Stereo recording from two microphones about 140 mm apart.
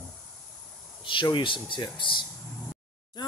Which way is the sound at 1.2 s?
35° left (ahead or behind).